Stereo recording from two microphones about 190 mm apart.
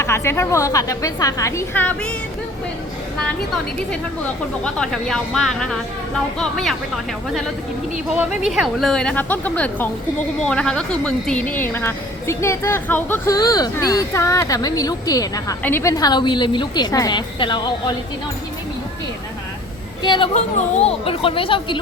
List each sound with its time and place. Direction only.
0.0 s a woman's voice: 15° left (ahead or behind)
4.6 s a woman's voice: 5° left (ahead or behind)
8.4 s a woman's voice: centre (ahead or behind); by 17.9 s 25° left (ahead or behind)
20.0 s a woman's voice: 25° left (ahead or behind)